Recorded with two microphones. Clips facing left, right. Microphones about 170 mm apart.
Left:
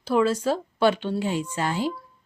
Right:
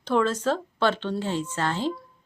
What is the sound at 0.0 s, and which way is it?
Speech, 5° left (ahead or behind).